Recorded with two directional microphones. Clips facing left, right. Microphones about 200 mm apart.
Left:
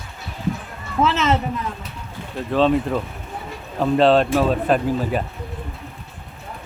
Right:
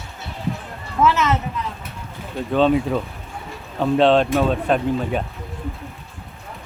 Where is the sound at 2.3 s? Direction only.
Centre (ahead or behind).